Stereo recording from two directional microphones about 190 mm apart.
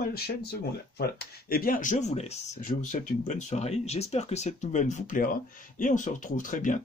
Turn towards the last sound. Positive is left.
turn(degrees=45)  # may be behind; listen again after turning